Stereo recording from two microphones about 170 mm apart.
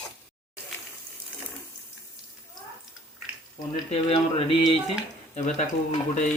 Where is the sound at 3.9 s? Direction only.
35° left (ahead or behind).